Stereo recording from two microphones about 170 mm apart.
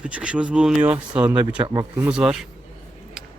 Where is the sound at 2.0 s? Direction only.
5° right (ahead or behind).